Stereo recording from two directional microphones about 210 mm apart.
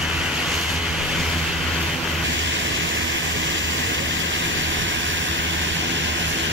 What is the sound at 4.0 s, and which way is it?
Vehicle, 60° right (ahead or behind).